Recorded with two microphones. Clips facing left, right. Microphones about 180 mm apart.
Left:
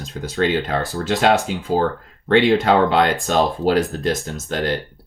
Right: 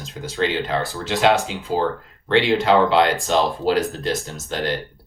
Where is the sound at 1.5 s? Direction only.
50° left (ahead or behind).